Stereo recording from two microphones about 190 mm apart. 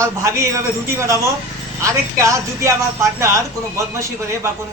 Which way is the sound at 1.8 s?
15° right (ahead or behind).